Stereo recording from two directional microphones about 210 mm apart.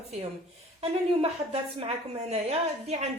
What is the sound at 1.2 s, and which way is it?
Speech, 30° right (ahead or behind).